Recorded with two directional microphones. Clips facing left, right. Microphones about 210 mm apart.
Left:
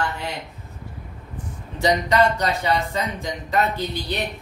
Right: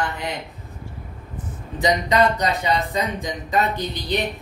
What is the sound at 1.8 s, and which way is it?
Speech, 15° right (ahead or behind).